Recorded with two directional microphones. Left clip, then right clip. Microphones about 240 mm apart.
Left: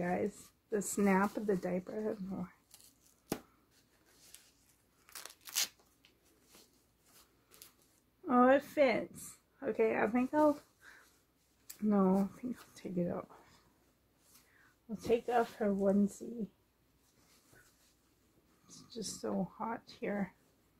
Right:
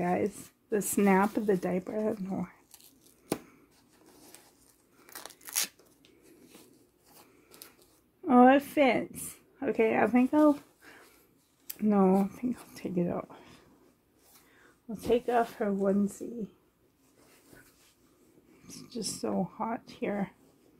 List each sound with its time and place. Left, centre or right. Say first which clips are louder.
0.0 s speech: right 6 dB; right
5.1 s scissors: right 3 dB; centre
8.3 s a woman's voice: right 6 dB; right
14.9 s speech: right 5 dB; right
18.7 s speech: right 7 dB; right